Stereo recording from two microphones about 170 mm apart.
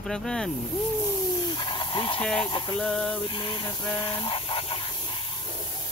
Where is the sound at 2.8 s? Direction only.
5° left (ahead or behind).